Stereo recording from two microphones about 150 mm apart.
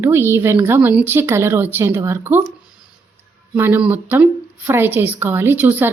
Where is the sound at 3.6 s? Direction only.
10° right (ahead or behind).